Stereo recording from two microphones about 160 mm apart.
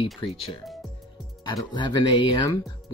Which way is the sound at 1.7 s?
30° left (ahead or behind).